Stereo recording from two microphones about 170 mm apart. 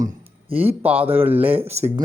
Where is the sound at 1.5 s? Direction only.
40° right (ahead or behind).